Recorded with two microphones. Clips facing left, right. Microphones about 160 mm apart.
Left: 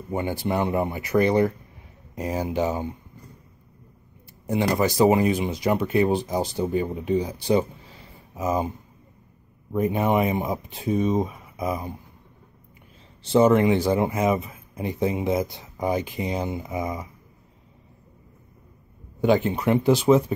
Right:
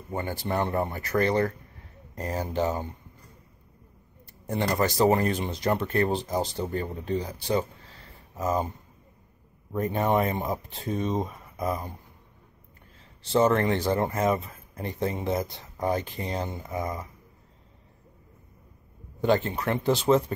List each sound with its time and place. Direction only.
0.1 s speech: 15° left (ahead or behind)
4.5 s speech: 10° left (ahead or behind)
9.7 s speech: 5° left (ahead or behind)
13.2 s speech: 15° left (ahead or behind)
19.2 s speech: 10° left (ahead or behind)